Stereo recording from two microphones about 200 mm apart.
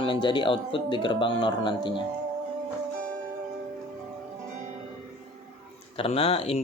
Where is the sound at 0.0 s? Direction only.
25° left (ahead or behind).